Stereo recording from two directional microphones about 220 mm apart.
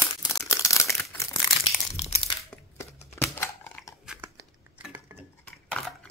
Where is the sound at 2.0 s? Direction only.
30° left (ahead or behind).